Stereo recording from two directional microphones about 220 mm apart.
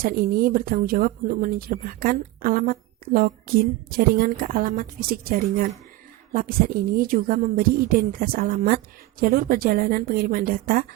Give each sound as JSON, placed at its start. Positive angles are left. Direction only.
{"t": 0.0, "sound": "speech", "side_deg": -40}